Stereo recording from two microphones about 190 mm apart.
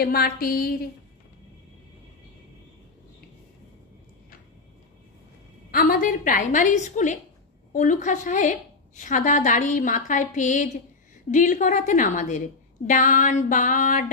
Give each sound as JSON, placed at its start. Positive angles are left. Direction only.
{"t": 0.0, "sound": "a woman's voice", "side_deg": 50}
{"t": 5.7, "sound": "a woman's voice", "side_deg": 50}